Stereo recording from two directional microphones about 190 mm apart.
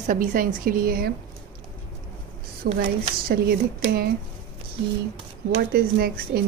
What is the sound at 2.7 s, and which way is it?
Speech, 50° right (ahead or behind).